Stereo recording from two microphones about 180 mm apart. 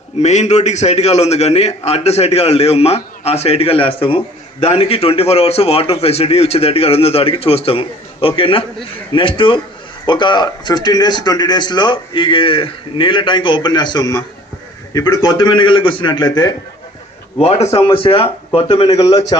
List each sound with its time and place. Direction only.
0.2 s a man's voice: 40° left (ahead or behind); by 16.5 s 25° left (ahead or behind)
17.3 s a man's voice: 35° left (ahead or behind)